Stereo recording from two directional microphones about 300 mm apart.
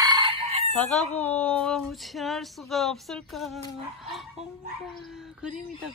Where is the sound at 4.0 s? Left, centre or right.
Centre.